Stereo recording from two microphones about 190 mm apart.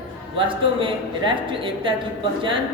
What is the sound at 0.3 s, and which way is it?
Speech, 25° right (ahead or behind).